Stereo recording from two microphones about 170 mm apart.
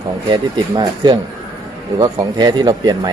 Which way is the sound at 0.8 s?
25° right (ahead or behind).